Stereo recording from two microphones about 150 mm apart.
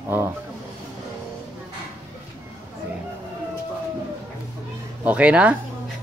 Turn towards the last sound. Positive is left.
turn(degrees=-10)  # may be behind; listen again after turning